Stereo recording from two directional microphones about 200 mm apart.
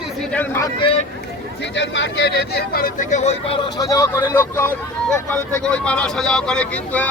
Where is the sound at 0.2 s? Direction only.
5° left (ahead or behind).